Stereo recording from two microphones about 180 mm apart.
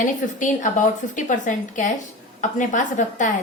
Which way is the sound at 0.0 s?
45° left (ahead or behind).